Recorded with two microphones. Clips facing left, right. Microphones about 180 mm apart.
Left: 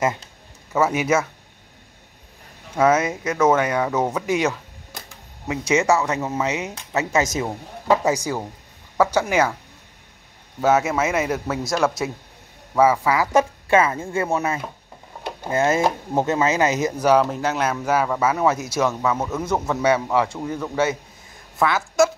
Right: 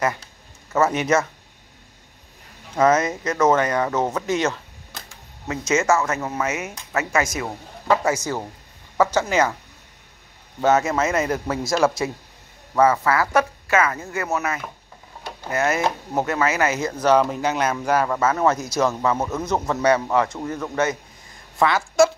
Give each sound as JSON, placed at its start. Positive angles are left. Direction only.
{"t": 0.7, "sound": "speech", "side_deg": 5}
{"t": 2.7, "sound": "speech", "side_deg": 10}
{"t": 10.6, "sound": "speech", "side_deg": 5}
{"t": 17.1, "sound": "speech", "side_deg": 0}
{"t": 19.1, "sound": "a man's voice", "side_deg": -10}
{"t": 19.4, "sound": "speech", "side_deg": 10}